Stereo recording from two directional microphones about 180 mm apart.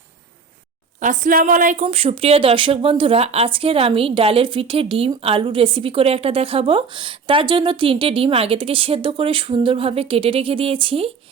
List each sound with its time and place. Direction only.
0.9 s speech: 45° right (ahead or behind); by 11.1 s 30° right (ahead or behind)